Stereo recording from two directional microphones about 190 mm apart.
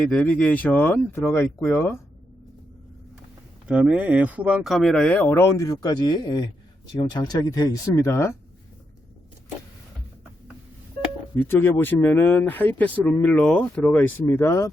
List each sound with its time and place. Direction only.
0.1 s speech: 5° left (ahead or behind)
3.7 s speech: 5° right (ahead or behind); by 8.4 s 15° left (ahead or behind)
11.3 s speech: 10° left (ahead or behind)